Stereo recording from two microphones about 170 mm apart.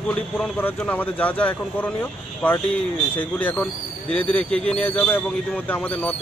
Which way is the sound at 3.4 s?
10° left (ahead or behind).